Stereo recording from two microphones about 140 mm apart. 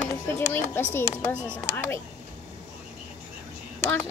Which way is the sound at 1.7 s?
20° left (ahead or behind).